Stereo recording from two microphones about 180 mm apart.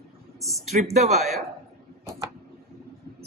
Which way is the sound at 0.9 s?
40° right (ahead or behind).